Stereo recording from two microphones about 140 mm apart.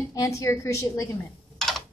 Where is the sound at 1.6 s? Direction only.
5° left (ahead or behind).